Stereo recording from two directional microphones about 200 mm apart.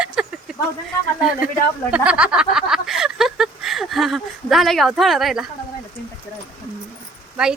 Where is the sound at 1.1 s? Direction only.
5° right (ahead or behind).